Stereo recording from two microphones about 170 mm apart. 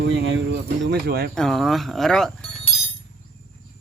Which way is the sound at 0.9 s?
70° right (ahead or behind).